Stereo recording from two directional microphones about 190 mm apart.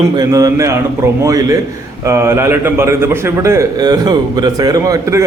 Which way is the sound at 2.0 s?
15° right (ahead or behind).